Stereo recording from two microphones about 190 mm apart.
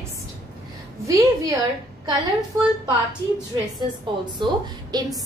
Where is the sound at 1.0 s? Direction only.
15° right (ahead or behind).